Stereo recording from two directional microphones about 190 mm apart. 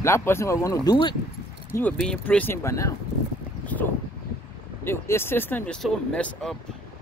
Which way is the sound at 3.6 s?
10° left (ahead or behind).